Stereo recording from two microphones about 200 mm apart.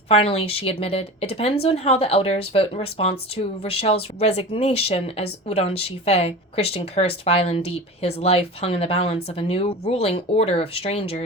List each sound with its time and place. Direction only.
0.1 s speech: 30° left (ahead or behind)